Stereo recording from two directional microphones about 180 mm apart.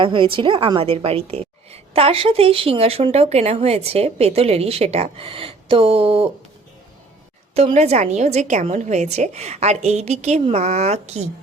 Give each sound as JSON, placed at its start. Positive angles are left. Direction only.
{"t": 0.0, "sound": "a woman's voice", "side_deg": -25}
{"t": 7.5, "sound": "a woman's voice", "side_deg": -35}